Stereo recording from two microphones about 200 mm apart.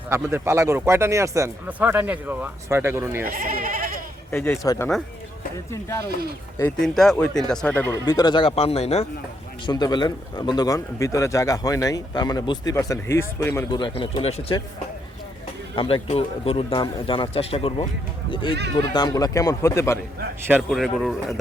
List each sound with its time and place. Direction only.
0.1 s speech: 15° right (ahead or behind)
3.2 s speech: 45° right (ahead or behind)
4.3 s speech: 10° left (ahead or behind); by 9.0 s 30° left (ahead or behind)
9.6 s speech: 20° left (ahead or behind)
15.7 s speech: 25° left (ahead or behind)
20.5 s speech: centre (ahead or behind)